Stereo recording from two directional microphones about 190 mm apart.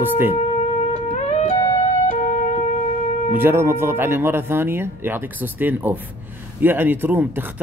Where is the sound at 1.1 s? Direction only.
35° left (ahead or behind).